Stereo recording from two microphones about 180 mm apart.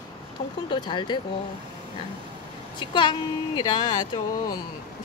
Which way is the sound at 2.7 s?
25° left (ahead or behind).